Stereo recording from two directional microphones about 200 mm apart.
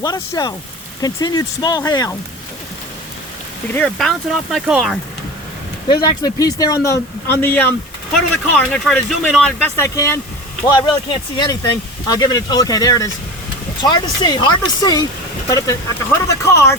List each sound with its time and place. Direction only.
0.0 s speech: 20° left (ahead or behind)
3.7 s speech: 5° left (ahead or behind)
5.9 s speech: 20° left (ahead or behind)